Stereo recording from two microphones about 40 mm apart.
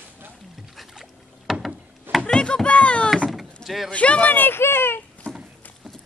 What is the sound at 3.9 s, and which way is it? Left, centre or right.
Speech, left.